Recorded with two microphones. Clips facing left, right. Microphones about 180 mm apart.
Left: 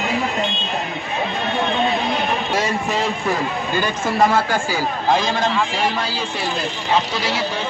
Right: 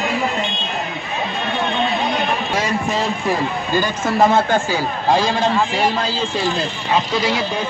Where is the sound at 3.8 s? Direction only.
20° right (ahead or behind).